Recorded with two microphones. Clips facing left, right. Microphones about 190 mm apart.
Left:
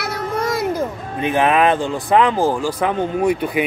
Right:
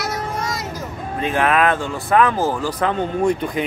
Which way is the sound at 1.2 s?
20° left (ahead or behind).